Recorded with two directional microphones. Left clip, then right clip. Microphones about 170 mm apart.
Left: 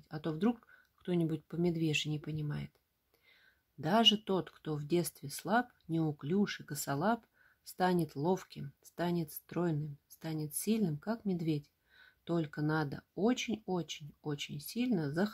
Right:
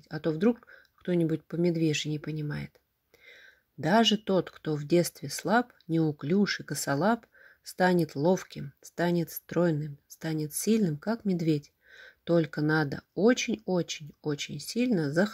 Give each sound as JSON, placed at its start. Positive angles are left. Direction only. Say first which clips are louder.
{"t": 0.1, "sound": "speech", "louder": "right 8 dB", "side_deg": -10}